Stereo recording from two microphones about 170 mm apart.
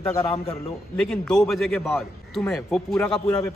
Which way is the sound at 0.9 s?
5° left (ahead or behind).